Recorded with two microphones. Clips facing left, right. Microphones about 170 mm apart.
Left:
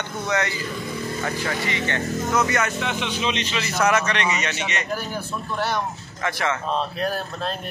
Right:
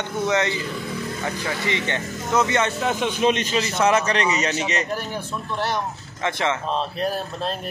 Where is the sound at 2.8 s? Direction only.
40° right (ahead or behind).